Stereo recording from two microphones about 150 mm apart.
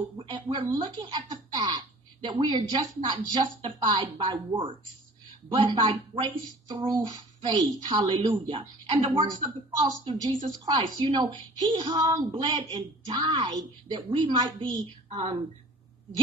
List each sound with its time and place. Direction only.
0.2 s speech: 30° right (ahead or behind)